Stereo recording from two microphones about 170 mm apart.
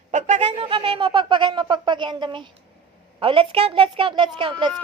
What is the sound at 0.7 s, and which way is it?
A woman's voice, 30° right (ahead or behind).